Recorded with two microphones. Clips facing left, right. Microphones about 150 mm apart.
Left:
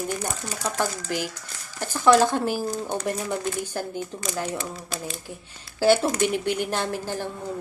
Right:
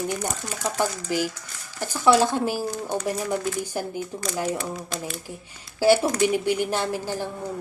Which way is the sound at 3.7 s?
10° right (ahead or behind).